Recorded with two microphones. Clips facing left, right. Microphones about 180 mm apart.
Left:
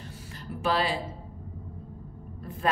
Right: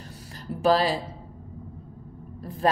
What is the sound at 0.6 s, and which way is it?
Speech, 40° right (ahead or behind).